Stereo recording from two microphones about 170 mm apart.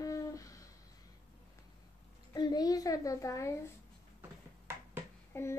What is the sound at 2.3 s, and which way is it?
Child singing, 25° left (ahead or behind).